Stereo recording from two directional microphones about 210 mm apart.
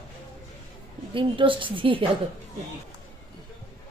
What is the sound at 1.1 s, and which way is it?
Speech, 25° right (ahead or behind).